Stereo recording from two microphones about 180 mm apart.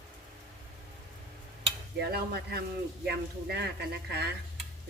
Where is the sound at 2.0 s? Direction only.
65° right (ahead or behind).